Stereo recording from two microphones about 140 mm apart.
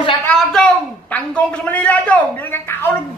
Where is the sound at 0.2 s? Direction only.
5° left (ahead or behind).